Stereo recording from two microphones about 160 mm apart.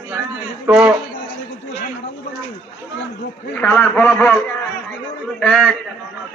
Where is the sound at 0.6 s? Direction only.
5° right (ahead or behind).